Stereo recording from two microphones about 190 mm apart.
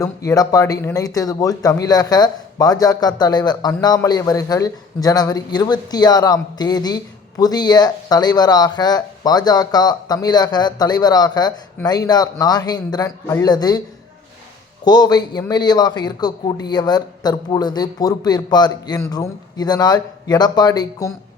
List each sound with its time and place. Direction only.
0.0 s speech: 20° left (ahead or behind)
14.8 s speech: 20° left (ahead or behind)